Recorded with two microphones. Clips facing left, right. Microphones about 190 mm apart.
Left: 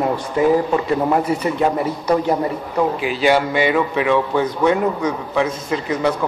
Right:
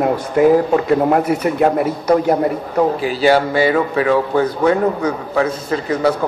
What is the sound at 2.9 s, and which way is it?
A man's voice, 40° right (ahead or behind).